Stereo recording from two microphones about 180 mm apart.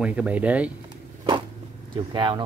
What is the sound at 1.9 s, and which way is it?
Speech, 25° right (ahead or behind).